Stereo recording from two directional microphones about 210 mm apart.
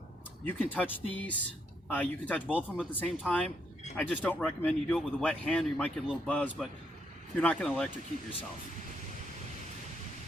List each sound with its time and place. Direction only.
0.4 s speech: 10° left (ahead or behind)